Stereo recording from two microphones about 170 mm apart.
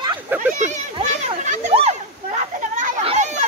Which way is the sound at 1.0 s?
45° right (ahead or behind).